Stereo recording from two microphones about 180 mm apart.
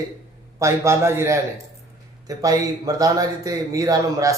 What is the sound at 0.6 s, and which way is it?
A man's voice, 15° right (ahead or behind).